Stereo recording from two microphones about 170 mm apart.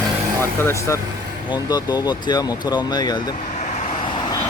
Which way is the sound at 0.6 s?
15° left (ahead or behind).